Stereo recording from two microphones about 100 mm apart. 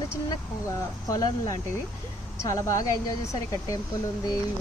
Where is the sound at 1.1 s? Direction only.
40° left (ahead or behind).